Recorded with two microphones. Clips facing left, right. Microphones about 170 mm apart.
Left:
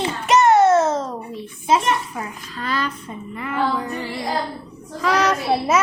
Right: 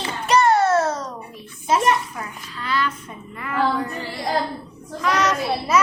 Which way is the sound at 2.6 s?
45° left (ahead or behind).